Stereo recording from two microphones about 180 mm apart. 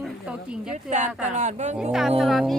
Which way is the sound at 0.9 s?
40° right (ahead or behind).